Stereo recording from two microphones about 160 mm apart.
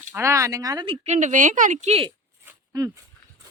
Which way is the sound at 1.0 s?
45° right (ahead or behind).